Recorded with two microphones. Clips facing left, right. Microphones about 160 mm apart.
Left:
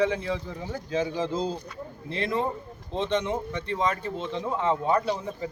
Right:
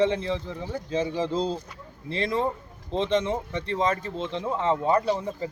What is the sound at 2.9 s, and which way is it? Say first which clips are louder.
Speech: right 2 dB; 30° right (ahead or behind).